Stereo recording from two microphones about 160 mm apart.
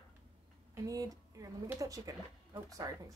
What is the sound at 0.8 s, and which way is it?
Speech, 20° right (ahead or behind).